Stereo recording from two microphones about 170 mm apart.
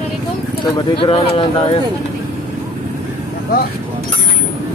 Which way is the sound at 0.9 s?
30° left (ahead or behind).